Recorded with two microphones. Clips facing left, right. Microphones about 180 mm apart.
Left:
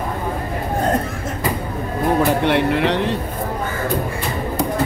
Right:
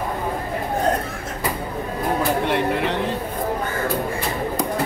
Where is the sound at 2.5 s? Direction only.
70° left (ahead or behind).